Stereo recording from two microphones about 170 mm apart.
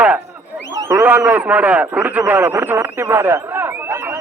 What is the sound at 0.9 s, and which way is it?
A man's voice, 15° right (ahead or behind).